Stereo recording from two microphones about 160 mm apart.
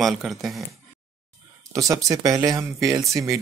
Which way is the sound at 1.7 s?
20° right (ahead or behind).